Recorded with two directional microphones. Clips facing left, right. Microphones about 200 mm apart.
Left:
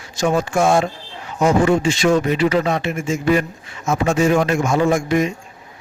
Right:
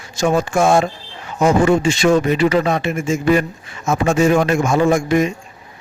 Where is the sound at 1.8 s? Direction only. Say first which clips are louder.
Right 2 dB; 50° right (ahead or behind).